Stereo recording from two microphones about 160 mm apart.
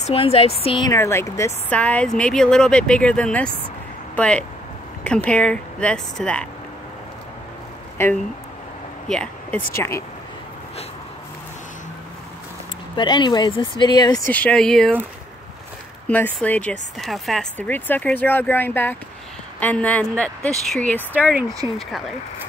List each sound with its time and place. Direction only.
0.0 s speech: 40° left (ahead or behind)
0.8 s speech: 15° left (ahead or behind)
9.0 s a sound: 5° left (ahead or behind)
9.8 s speech: 20° left (ahead or behind)
12.9 s speech: 30° left (ahead or behind)
14.3 s speech: 5° left (ahead or behind)
16.1 s speech: 10° left (ahead or behind)
21.1 s speech: 10° right (ahead or behind)